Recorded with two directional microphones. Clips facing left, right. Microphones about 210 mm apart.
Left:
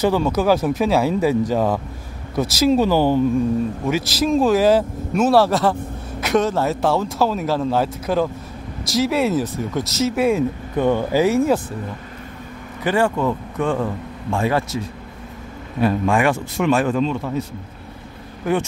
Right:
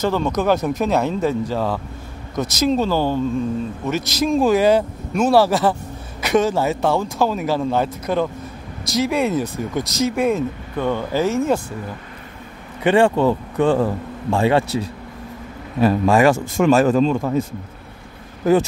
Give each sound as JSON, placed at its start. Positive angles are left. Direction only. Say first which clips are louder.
{"t": 0.0, "sound": "speech", "louder": "left 2 dB", "side_deg": 10}
{"t": 12.8, "sound": "speech", "louder": "right 4 dB", "side_deg": -30}
{"t": 15.8, "sound": "a man's voice", "louder": "right 3 dB", "side_deg": -40}